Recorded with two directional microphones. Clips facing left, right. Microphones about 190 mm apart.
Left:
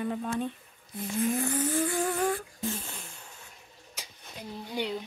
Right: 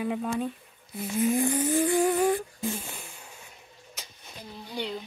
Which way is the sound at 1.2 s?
10° right (ahead or behind).